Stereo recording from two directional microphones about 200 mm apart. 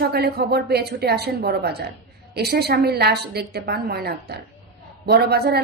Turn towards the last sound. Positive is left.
turn(degrees=-50)  # may be behind; listen again after turning